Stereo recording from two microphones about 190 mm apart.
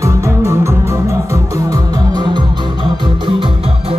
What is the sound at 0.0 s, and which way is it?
Music, 15° right (ahead or behind).